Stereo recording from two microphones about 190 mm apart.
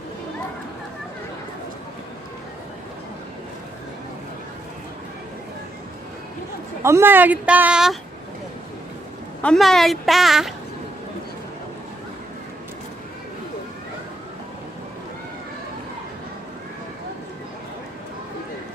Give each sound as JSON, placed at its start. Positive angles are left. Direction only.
{"t": 6.8, "sound": "speech", "side_deg": -15}
{"t": 9.4, "sound": "speech", "side_deg": 5}